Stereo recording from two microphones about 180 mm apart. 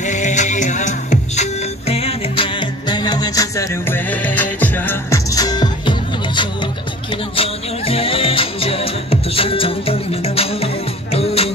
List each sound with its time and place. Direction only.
0.0 s music: 40° left (ahead or behind)